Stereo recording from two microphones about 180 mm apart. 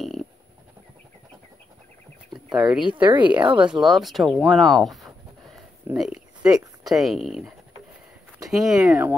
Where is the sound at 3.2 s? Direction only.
10° right (ahead or behind).